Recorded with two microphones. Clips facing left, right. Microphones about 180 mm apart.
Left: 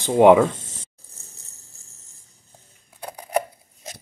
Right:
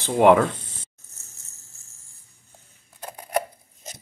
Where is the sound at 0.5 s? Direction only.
25° left (ahead or behind).